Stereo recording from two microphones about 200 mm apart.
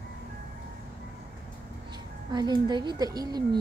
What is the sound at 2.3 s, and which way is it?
A child's voice, 20° right (ahead or behind).